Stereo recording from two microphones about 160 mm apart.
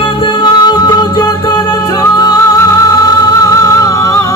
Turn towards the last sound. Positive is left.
turn(degrees=20)  # may be behind; listen again after turning